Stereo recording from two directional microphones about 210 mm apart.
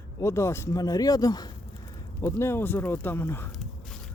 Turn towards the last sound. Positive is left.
turn(degrees=10)  # may be behind; listen again after turning